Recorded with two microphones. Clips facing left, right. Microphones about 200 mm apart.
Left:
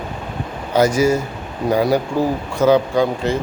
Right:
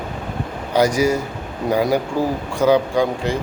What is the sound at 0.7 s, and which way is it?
A man's voice, 15° right (ahead or behind).